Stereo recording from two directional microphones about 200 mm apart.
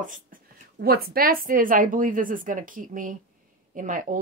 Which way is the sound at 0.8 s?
50° right (ahead or behind).